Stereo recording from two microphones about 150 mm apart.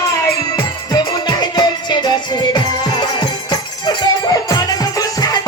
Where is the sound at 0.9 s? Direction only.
25° left (ahead or behind).